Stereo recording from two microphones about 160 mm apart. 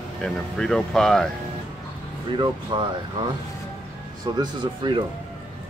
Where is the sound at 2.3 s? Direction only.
30° right (ahead or behind).